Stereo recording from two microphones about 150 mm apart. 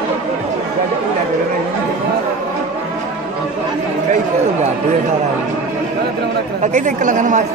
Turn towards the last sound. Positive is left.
turn(degrees=-55)  # may be behind; listen again after turning